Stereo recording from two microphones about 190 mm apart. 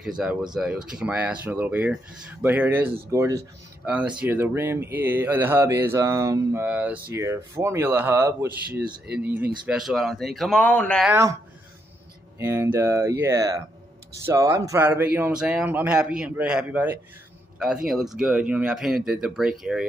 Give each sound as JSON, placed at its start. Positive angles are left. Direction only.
{"t": 0.2, "sound": "speech", "side_deg": -5}
{"t": 11.1, "sound": "speech", "side_deg": -15}
{"t": 12.4, "sound": "speech", "side_deg": -10}